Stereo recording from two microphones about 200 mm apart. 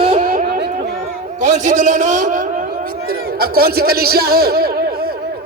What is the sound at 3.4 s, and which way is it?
A man's voice, 50° right (ahead or behind).